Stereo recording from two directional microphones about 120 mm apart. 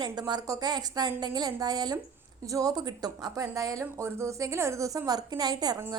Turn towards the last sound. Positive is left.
turn(degrees=-35)  # may be behind; listen again after turning